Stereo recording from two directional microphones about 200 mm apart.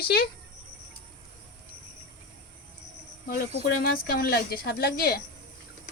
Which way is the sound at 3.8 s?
45° left (ahead or behind).